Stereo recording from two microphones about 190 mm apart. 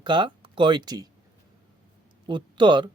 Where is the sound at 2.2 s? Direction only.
25° right (ahead or behind).